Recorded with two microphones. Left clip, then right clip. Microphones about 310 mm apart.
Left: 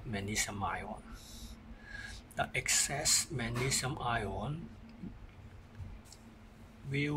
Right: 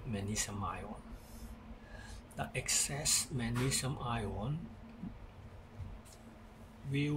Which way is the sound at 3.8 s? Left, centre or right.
Left.